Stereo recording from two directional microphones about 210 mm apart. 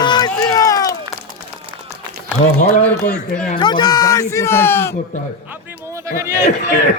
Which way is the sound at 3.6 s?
20° left (ahead or behind).